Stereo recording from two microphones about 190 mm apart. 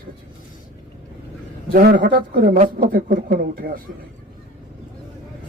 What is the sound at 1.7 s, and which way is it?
Speech, 45° right (ahead or behind).